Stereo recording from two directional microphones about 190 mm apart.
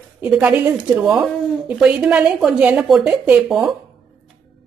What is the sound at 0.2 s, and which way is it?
A woman's voice, 10° right (ahead or behind).